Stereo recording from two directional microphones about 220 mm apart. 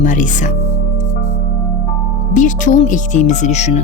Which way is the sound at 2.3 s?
35° left (ahead or behind).